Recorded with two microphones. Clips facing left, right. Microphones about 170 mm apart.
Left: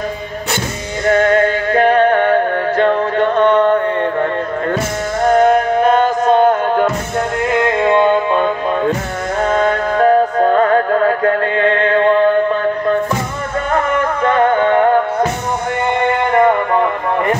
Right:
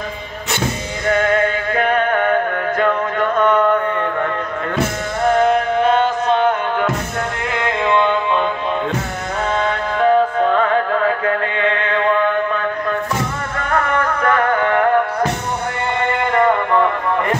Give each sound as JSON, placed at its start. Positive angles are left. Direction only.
{"t": 1.0, "sound": "music", "side_deg": 40}
{"t": 13.7, "sound": "music", "side_deg": 25}